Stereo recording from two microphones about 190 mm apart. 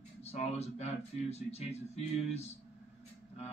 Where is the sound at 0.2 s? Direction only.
35° left (ahead or behind).